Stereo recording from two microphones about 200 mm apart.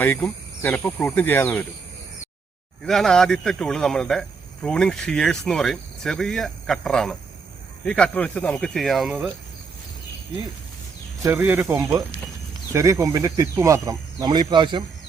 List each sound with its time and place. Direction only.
0.0 s speech: 10° left (ahead or behind)
2.8 s speech: centre (ahead or behind)
11.2 s speech: 15° right (ahead or behind)